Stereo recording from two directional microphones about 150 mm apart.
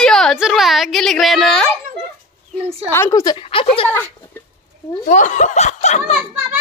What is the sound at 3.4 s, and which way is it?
Speech, 40° left (ahead or behind).